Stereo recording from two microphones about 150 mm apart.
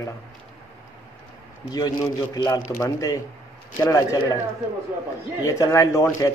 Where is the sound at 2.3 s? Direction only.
25° left (ahead or behind).